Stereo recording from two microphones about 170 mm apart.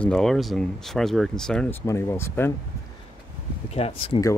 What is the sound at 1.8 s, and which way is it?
Speech, 15° left (ahead or behind).